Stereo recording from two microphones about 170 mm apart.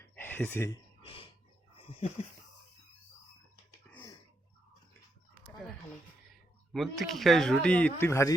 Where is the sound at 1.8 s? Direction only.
35° left (ahead or behind).